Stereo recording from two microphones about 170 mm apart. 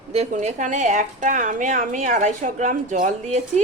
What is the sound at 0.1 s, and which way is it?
Speech, 40° right (ahead or behind).